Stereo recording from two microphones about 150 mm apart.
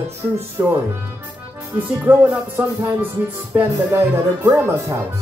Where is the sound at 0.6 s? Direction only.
20° right (ahead or behind).